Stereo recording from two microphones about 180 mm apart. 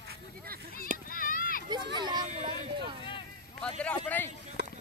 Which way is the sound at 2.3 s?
40° right (ahead or behind).